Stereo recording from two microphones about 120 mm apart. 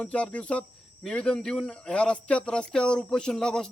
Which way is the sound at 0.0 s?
10° left (ahead or behind).